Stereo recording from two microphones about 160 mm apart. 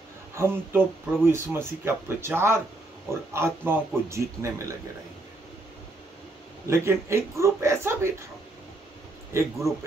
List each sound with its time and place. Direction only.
0.3 s speech: 15° right (ahead or behind)
6.7 s speech: 15° right (ahead or behind)
9.3 s speech: 15° right (ahead or behind)